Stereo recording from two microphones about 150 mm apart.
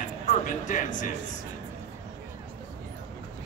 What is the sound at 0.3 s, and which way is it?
Speech, 60° left (ahead or behind).